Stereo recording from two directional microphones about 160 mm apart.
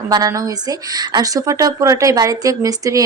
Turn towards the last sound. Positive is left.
turn(degrees=-20)  # may be behind; listen again after turning